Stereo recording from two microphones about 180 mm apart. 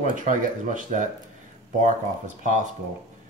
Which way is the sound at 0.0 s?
45° right (ahead or behind).